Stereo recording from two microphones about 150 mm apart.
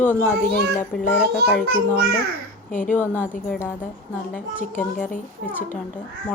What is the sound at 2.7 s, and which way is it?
Speech, 60° left (ahead or behind).